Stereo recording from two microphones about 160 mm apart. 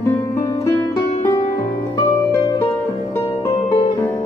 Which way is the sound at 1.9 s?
20° left (ahead or behind).